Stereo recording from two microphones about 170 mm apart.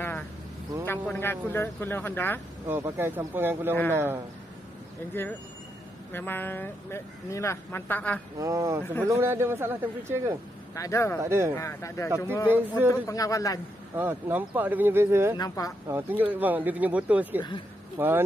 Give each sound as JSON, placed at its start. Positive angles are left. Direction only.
{"t": 0.8, "sound": "speech", "side_deg": 10}
{"t": 2.7, "sound": "speech", "side_deg": -15}
{"t": 5.2, "sound": "speech", "side_deg": 15}
{"t": 8.4, "sound": "speech", "side_deg": -20}
{"t": 10.7, "sound": "speech", "side_deg": 20}
{"t": 11.2, "sound": "speech", "side_deg": -15}
{"t": 11.5, "sound": "speech", "side_deg": 15}
{"t": 12.4, "sound": "speech", "side_deg": -10}
{"t": 12.9, "sound": "a man's voice", "side_deg": 15}
{"t": 13.9, "sound": "speech", "side_deg": -10}
{"t": 15.3, "sound": "a man's voice", "side_deg": 20}
{"t": 15.9, "sound": "speech", "side_deg": -10}